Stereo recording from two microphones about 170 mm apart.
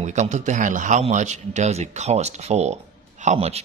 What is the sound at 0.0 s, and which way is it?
A man's voice, 45° right (ahead or behind).